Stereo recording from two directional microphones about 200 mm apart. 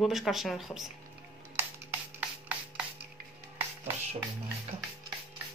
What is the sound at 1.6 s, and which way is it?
Music, 10° right (ahead or behind).